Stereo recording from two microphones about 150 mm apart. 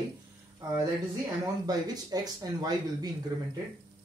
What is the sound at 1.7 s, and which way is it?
Speech, 25° right (ahead or behind).